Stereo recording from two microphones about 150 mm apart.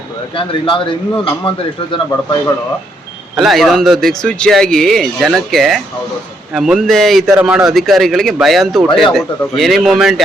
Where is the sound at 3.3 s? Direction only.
Centre (ahead or behind).